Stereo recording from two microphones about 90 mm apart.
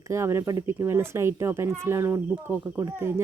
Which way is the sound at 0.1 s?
30° right (ahead or behind).